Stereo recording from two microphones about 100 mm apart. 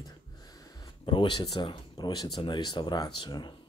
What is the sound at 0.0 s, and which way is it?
Speech, 40° left (ahead or behind).